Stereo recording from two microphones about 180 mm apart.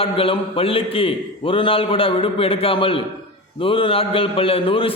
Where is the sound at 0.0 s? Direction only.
30° left (ahead or behind).